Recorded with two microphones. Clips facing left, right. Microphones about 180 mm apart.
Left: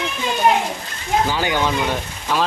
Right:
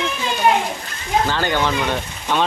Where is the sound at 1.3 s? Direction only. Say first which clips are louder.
Even; 10° left (ahead or behind).